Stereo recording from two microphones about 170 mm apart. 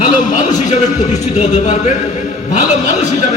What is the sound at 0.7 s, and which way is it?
A man's voice, 45° left (ahead or behind).